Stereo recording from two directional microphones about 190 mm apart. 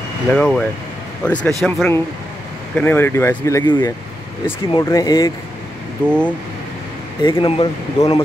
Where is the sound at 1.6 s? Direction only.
5° left (ahead or behind); by 5.3 s 20° left (ahead or behind).